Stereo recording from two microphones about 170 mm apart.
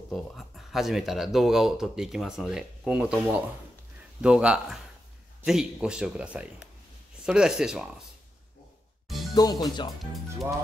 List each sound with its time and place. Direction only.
0.1 s speech: centre (ahead or behind)
9.3 s speech: 25° left (ahead or behind)